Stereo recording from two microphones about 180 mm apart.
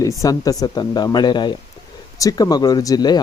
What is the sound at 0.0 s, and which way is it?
A man's voice, 20° left (ahead or behind).